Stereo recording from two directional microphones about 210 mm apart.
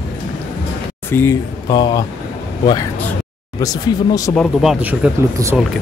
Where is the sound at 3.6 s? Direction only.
15° left (ahead or behind).